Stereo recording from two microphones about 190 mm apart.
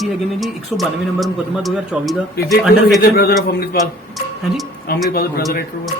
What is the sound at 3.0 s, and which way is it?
Speech, 55° left (ahead or behind).